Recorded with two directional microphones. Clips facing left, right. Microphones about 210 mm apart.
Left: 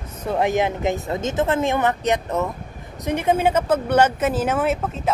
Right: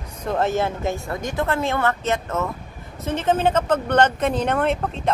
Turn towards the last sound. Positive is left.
turn(degrees=5)  # may be behind; listen again after turning